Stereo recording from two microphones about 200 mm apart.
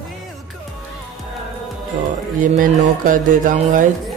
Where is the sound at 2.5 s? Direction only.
40° right (ahead or behind).